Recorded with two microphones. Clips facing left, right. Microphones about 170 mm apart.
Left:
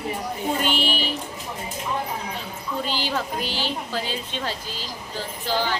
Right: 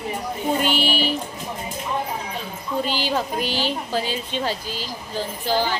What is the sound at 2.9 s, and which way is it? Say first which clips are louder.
A woman's voice: right 2 dB; 15° right (ahead or behind).